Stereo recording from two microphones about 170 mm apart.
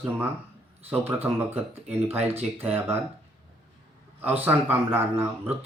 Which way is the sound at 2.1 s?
40° right (ahead or behind).